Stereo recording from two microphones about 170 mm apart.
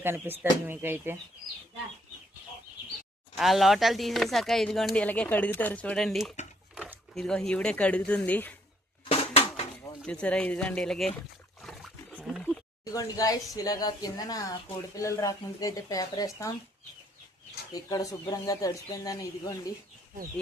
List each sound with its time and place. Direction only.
0.0 s speech: 10° right (ahead or behind)
3.3 s speech: centre (ahead or behind)
6.7 s a sound: 5° right (ahead or behind)
7.2 s speech: 5° left (ahead or behind)
9.0 s dishes: 35° left (ahead or behind)
10.0 s speech: 5° left (ahead or behind)
11.6 s wild animals: centre (ahead or behind)
12.8 s speech: 20° left (ahead or behind)
17.7 s speech: 20° left (ahead or behind)